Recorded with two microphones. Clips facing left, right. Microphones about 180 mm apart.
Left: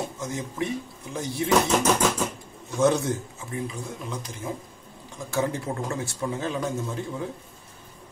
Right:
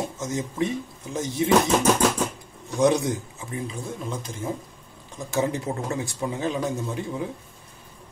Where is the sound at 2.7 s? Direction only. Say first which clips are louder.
Right 1 dB; 15° right (ahead or behind).